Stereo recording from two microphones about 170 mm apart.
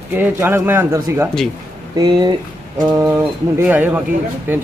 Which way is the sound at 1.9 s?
25° right (ahead or behind).